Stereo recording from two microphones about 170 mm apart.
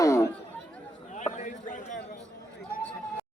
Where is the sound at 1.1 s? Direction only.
45° left (ahead or behind).